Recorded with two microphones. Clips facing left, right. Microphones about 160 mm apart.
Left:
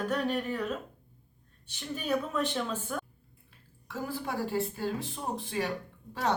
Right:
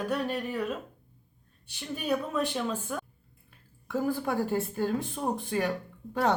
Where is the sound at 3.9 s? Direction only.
50° right (ahead or behind).